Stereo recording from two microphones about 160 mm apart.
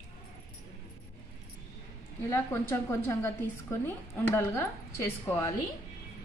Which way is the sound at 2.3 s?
15° left (ahead or behind).